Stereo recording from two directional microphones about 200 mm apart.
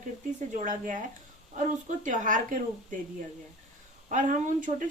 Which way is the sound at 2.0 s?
40° right (ahead or behind).